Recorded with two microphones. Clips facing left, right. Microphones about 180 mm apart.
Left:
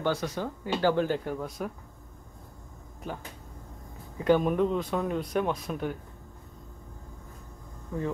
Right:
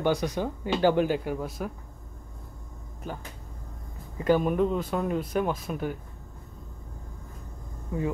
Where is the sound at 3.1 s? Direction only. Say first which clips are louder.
Even; centre (ahead or behind).